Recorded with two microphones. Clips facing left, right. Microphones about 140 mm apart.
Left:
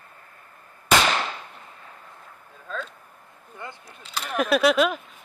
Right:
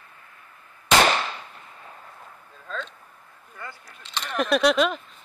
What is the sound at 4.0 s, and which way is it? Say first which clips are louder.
Speech: left 1 dB; 5° left (ahead or behind).